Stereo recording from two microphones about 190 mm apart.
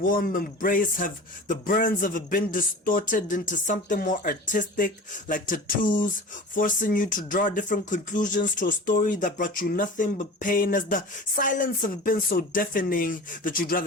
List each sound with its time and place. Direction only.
0.0 s speech: 45° left (ahead or behind)
6.5 s speech: 45° left (ahead or behind)